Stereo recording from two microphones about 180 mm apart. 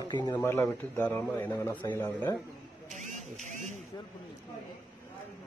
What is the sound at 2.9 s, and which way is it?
Speech, 40° right (ahead or behind).